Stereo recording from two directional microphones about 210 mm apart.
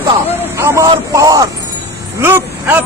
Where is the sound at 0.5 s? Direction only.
15° right (ahead or behind).